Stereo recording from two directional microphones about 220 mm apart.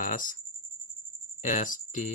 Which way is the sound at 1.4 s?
35° left (ahead or behind).